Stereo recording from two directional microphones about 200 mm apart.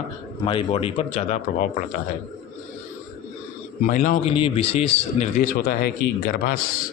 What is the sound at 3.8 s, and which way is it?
A man's voice, 35° left (ahead or behind).